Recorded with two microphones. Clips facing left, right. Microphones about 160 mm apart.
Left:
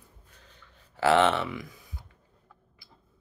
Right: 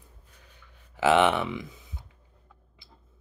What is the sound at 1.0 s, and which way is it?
Speech, 15° right (ahead or behind).